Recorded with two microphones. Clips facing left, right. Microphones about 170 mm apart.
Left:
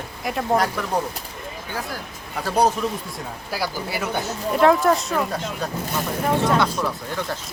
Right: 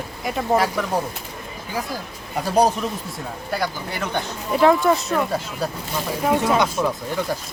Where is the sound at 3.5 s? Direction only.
5° left (ahead or behind).